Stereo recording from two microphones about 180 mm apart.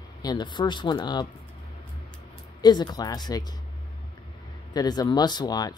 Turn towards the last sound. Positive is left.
turn(degrees=20)  # may be behind; listen again after turning